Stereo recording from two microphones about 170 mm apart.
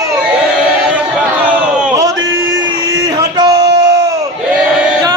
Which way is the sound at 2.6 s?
20° right (ahead or behind).